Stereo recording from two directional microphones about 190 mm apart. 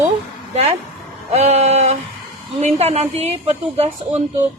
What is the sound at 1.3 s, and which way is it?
A man's voice, 35° right (ahead or behind).